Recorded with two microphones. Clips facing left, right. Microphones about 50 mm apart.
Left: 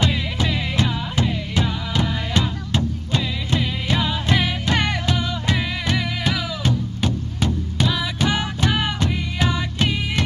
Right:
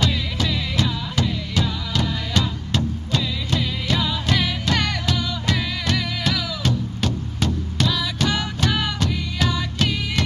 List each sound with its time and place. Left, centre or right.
0.0 s music: left